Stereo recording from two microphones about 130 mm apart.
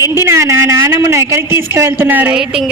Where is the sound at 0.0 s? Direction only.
20° right (ahead or behind).